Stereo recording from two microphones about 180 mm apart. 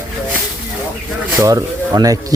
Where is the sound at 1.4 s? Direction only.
20° right (ahead or behind).